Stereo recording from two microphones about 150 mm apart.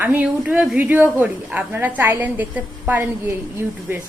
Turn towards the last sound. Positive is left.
turn(degrees=-15)  # may be behind; listen again after turning